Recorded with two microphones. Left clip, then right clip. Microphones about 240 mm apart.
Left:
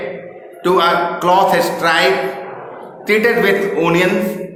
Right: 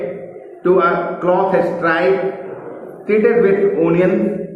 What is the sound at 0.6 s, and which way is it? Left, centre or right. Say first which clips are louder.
A man's voice: left 1 dB; left.